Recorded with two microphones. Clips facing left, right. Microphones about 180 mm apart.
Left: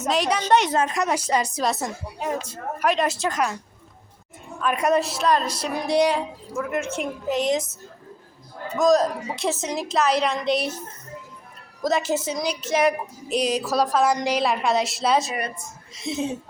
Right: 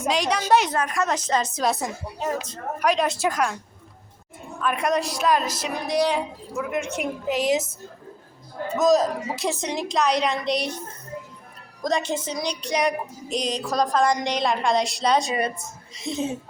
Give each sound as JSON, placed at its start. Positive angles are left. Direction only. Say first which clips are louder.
{"t": 0.1, "sound": "music", "louder": "left 1 dB", "side_deg": 5}
{"t": 0.7, "sound": "speech", "louder": "left 2 dB", "side_deg": 20}
{"t": 1.0, "sound": "speech", "louder": "left 1 dB", "side_deg": 10}
{"t": 1.6, "sound": "music", "louder": "right 1 dB", "side_deg": 0}
{"t": 3.2, "sound": "a woman's voice", "louder": "right 1 dB", "side_deg": -10}
{"t": 4.6, "sound": "music", "louder": "left 2 dB", "side_deg": 5}
{"t": 8.8, "sound": "music", "louder": "left 1 dB", "side_deg": 0}
{"t": 11.8, "sound": "music", "louder": "left 2 dB", "side_deg": 5}